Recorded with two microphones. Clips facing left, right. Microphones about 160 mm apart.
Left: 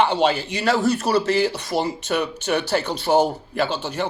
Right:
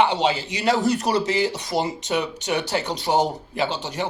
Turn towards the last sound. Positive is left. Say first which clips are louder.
# left 2 dB
turn(degrees=-15)  # may be behind; listen again after turning